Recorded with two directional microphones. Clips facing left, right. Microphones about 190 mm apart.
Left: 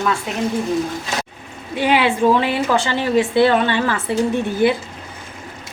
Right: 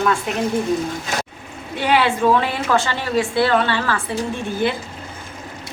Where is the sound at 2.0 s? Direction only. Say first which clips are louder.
Left 2 dB; 15° left (ahead or behind).